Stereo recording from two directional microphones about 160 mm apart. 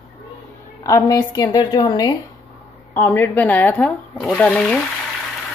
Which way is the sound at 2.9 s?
15° left (ahead or behind).